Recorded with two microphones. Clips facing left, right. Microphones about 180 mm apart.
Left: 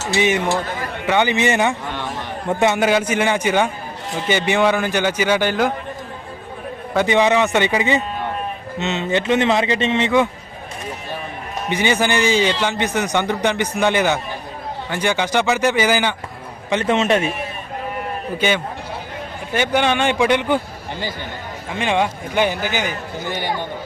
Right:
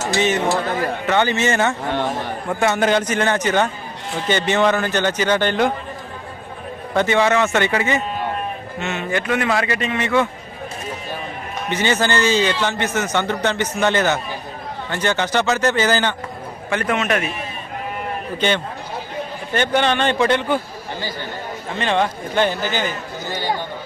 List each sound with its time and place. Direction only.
0.2 s a man's voice: 10° left (ahead or behind)
2.7 s a man's voice: 10° left (ahead or behind)
6.9 s a man's voice: 15° left (ahead or behind)
11.7 s a man's voice: 15° left (ahead or behind)
16.6 s speech: 20° left (ahead or behind)
18.3 s a man's voice: 10° left (ahead or behind)
21.7 s a man's voice: 10° left (ahead or behind)